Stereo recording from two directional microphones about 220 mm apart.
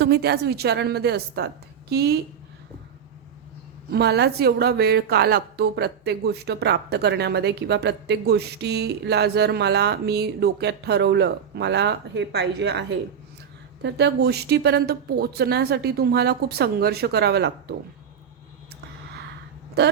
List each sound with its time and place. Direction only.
0.0 s a woman's voice: 45° right (ahead or behind)
3.9 s a woman's voice: 50° right (ahead or behind)